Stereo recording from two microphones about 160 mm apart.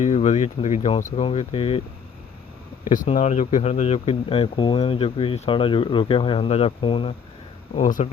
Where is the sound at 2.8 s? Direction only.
55° left (ahead or behind); by 7.1 s 35° left (ahead or behind).